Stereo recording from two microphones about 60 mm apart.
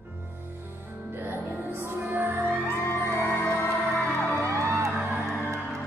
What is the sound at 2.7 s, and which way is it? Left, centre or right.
Music, left.